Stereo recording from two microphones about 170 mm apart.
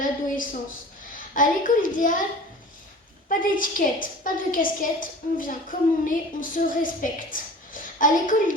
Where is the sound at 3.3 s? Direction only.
55° left (ahead or behind).